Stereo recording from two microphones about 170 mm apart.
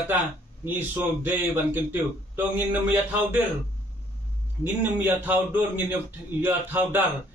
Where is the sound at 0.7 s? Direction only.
10° right (ahead or behind).